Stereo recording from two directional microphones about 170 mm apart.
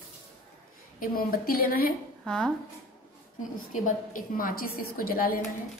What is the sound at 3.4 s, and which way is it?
A woman's voice, 50° left (ahead or behind).